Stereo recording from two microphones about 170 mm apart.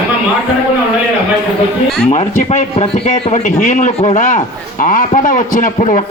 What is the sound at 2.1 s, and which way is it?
Speech, 45° left (ahead or behind).